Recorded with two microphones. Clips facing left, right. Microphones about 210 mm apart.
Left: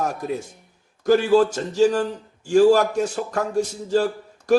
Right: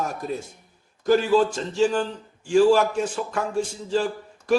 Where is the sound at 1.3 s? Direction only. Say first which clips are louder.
Left 3 dB; 45° left (ahead or behind).